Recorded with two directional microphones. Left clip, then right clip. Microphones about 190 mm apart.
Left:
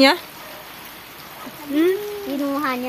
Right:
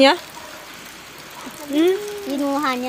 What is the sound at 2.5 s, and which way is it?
Speech, 15° right (ahead or behind).